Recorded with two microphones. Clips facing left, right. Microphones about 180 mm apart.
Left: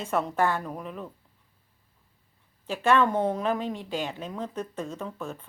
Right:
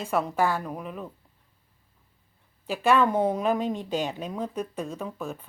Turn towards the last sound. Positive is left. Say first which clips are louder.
# right 1 dB
turn(degrees=-10)  # may be behind; listen again after turning